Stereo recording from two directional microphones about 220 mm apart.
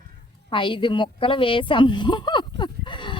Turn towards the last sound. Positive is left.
turn(degrees=20)  # may be behind; listen again after turning